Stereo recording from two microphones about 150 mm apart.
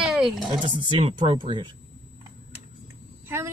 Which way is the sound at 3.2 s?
15° right (ahead or behind).